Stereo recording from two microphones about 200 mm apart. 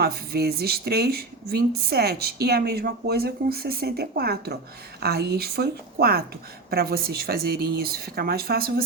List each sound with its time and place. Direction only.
0.0 s speech: 50° right (ahead or behind)